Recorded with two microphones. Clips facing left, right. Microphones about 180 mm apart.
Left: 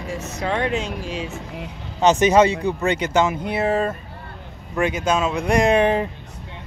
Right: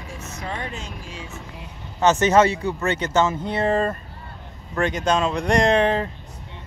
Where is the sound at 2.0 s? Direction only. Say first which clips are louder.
Left 2 dB; 15° left (ahead or behind).